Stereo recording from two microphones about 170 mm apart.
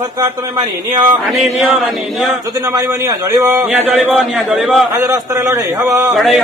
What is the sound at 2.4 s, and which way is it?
A man's voice, 20° right (ahead or behind).